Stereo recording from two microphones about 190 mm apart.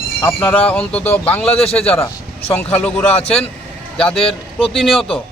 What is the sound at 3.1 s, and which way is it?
Speech, 35° left (ahead or behind).